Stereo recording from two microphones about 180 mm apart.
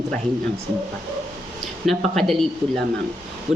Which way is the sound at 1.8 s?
Centre (ahead or behind).